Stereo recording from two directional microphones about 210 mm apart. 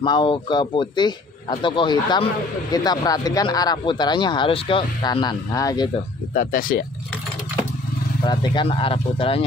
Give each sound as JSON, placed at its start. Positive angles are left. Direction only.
{"t": 0.0, "sound": "speech", "side_deg": 20}
{"t": 6.3, "sound": "speech", "side_deg": 40}
{"t": 8.2, "sound": "speech", "side_deg": 20}